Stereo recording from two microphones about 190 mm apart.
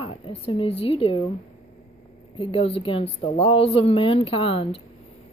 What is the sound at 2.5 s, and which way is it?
A woman's voice, 30° left (ahead or behind).